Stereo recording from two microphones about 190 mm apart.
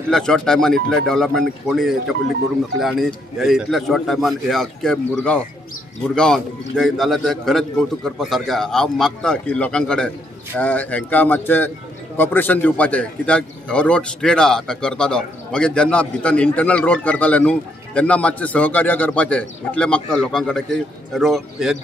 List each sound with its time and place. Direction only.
0.1 s a man's voice: 5° left (ahead or behind)